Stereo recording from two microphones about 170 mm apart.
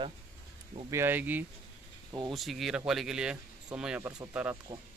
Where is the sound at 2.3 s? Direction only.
Centre (ahead or behind).